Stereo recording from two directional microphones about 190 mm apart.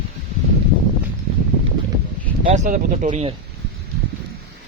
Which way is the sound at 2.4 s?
40° right (ahead or behind).